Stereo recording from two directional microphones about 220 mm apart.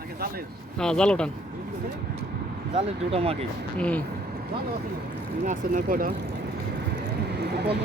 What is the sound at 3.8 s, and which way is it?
Speech, 5° left (ahead or behind).